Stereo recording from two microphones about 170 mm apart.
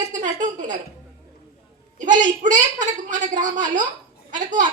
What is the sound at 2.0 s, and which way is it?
A woman's voice, 45° right (ahead or behind).